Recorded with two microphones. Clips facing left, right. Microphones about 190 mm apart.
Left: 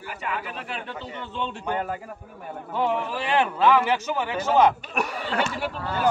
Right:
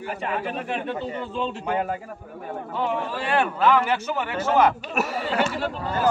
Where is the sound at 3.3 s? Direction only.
15° left (ahead or behind).